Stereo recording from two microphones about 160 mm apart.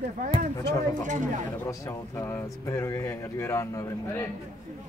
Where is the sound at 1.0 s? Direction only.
50° right (ahead or behind).